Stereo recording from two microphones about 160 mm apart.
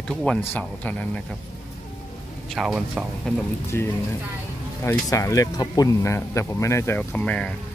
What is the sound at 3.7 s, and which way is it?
Speech, 15° left (ahead or behind).